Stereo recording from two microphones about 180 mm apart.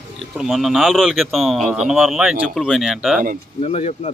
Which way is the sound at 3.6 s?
35° left (ahead or behind).